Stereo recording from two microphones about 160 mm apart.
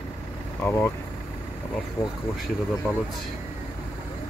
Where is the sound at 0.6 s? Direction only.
15° left (ahead or behind).